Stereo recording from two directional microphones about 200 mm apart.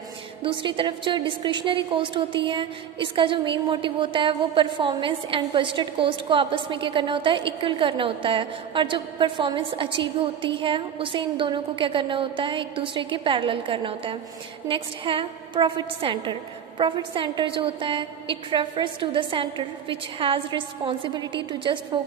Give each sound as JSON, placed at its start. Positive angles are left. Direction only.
{"t": 0.4, "sound": "a woman's voice", "side_deg": -25}